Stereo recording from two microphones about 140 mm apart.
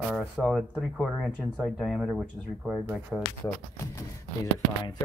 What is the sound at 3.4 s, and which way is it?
Speech, 15° left (ahead or behind).